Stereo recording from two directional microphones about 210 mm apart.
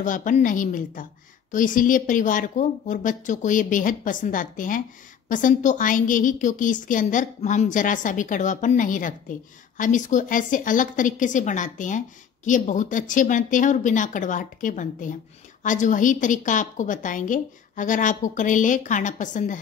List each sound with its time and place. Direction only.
0.0 s a woman's voice: 40° left (ahead or behind)